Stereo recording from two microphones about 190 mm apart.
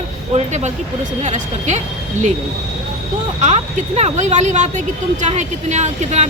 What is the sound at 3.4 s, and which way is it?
A woman's voice, 35° right (ahead or behind).